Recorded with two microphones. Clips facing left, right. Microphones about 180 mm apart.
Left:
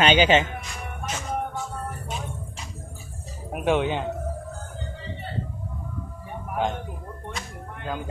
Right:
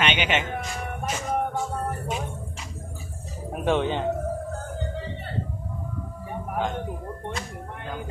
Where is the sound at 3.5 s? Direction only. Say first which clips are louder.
Left 1 dB; 5° left (ahead or behind).